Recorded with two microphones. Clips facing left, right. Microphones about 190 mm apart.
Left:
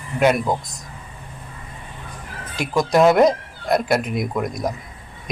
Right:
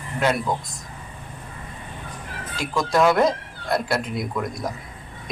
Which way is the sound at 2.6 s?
20° left (ahead or behind).